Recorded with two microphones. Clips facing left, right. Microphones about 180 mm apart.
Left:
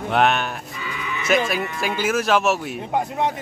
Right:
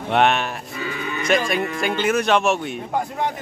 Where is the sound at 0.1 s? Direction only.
Centre (ahead or behind).